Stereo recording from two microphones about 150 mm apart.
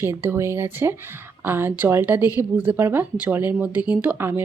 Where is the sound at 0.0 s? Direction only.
15° right (ahead or behind).